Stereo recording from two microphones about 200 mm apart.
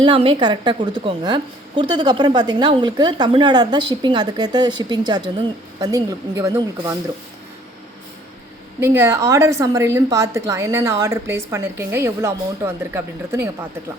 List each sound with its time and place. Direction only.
0.0 s a woman's voice: 25° right (ahead or behind)
8.8 s a woman's voice: 10° right (ahead or behind)